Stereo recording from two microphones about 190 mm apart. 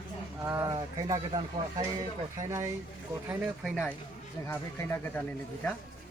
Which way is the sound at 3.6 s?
5° left (ahead or behind).